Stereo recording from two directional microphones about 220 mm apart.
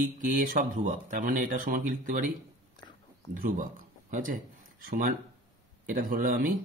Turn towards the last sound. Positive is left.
turn(degrees=-40)  # may be behind; listen again after turning